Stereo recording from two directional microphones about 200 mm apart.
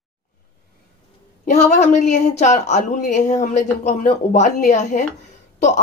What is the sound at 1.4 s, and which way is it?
A woman's voice, 35° left (ahead or behind).